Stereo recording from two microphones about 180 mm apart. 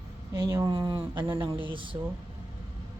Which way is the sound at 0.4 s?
15° right (ahead or behind).